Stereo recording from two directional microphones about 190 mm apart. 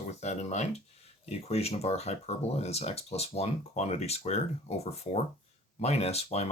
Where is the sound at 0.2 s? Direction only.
35° left (ahead or behind).